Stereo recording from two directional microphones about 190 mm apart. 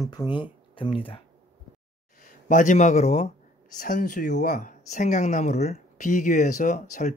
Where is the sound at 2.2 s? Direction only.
45° left (ahead or behind).